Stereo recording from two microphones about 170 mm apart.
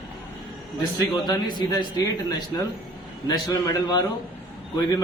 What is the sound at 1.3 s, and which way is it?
A man's voice, 25° left (ahead or behind).